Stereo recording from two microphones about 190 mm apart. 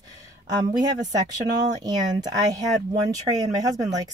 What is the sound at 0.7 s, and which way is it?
A woman's voice, 20° right (ahead or behind).